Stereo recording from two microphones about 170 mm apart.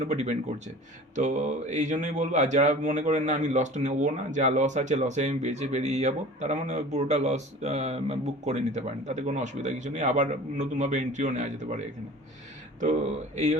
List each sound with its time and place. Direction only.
0.0 s speech: 40° right (ahead or behind)
12.8 s speech: 45° right (ahead or behind)